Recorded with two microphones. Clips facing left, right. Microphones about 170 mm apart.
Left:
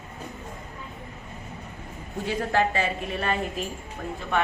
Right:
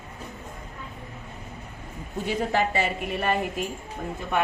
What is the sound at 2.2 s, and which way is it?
A woman's voice, 15° right (ahead or behind).